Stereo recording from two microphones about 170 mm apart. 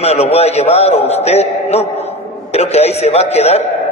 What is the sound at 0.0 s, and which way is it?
A man's voice, 40° left (ahead or behind).